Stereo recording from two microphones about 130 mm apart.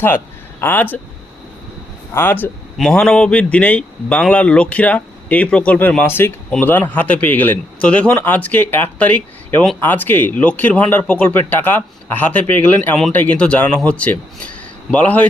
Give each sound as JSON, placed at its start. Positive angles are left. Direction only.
{"t": 0.6, "sound": "speech", "side_deg": 15}
{"t": 2.1, "sound": "speech", "side_deg": 15}